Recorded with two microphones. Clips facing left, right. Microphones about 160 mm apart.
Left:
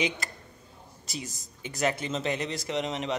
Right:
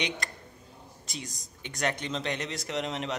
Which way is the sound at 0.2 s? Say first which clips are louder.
Even; 5° left (ahead or behind).